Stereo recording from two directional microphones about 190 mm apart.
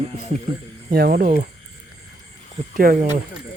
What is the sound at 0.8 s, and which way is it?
Speech, 55° right (ahead or behind).